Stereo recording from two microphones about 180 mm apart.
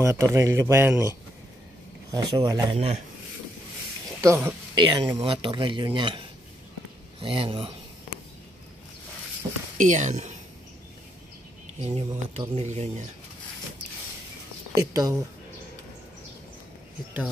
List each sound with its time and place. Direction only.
0.0 s a man's voice: 15° right (ahead or behind)
2.1 s speech: 25° right (ahead or behind)
4.2 s a man's voice: 15° right (ahead or behind); by 7.7 s 30° right (ahead or behind)
9.8 s speech: 40° right (ahead or behind)
11.8 s speech: 35° right (ahead or behind)
14.8 s speech: 20° right (ahead or behind)